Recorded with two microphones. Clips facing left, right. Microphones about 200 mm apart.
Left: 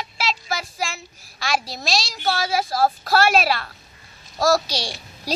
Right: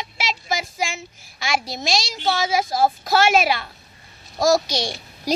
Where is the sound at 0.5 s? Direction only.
15° right (ahead or behind).